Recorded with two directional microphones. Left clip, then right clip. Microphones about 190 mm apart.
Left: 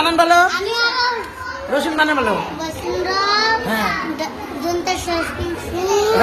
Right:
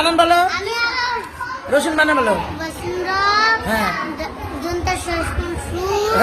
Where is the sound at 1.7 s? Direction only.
30° right (ahead or behind).